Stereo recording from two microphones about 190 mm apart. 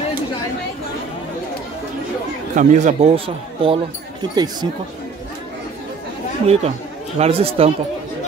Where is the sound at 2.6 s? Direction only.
40° right (ahead or behind).